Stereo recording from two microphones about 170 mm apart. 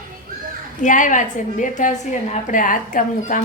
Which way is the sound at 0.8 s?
50° left (ahead or behind).